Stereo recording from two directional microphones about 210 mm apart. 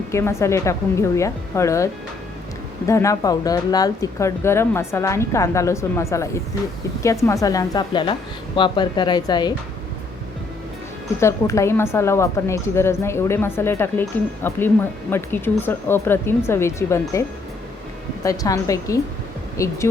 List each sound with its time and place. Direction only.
0.1 s speech: 15° left (ahead or behind)
11.2 s speech: 15° left (ahead or behind)